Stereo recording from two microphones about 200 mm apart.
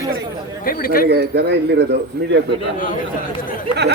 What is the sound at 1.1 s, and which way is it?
A man's voice, 55° right (ahead or behind).